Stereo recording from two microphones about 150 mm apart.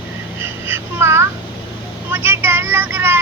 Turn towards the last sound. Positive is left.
turn(degrees=-15)  # may be behind; listen again after turning